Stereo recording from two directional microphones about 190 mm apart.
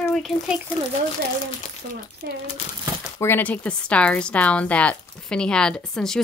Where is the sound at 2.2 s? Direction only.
60° right (ahead or behind).